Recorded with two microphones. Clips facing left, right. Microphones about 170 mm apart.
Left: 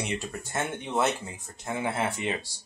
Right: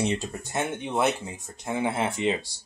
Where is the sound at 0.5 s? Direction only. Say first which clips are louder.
Right 2 dB; 15° right (ahead or behind).